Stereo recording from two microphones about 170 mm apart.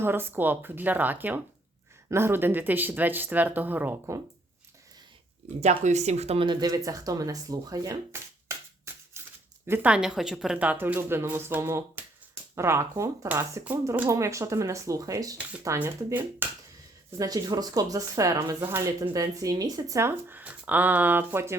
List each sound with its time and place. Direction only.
0.0 s speech: 10° right (ahead or behind)
5.5 s speech: 40° right (ahead or behind); by 16.5 s 10° right (ahead or behind)
17.2 s speech: 20° right (ahead or behind)